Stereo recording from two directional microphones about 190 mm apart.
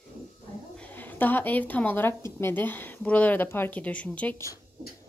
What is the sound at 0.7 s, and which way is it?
A woman's voice, 10° left (ahead or behind).